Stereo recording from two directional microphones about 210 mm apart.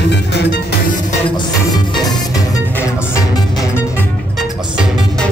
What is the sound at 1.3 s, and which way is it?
Music, 20° left (ahead or behind).